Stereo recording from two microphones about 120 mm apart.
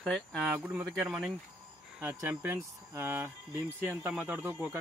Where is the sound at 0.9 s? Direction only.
10° right (ahead or behind).